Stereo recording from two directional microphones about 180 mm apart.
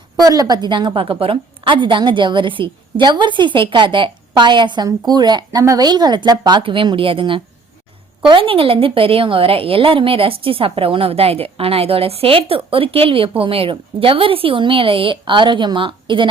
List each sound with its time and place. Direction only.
0.2 s a woman's voice: 20° right (ahead or behind)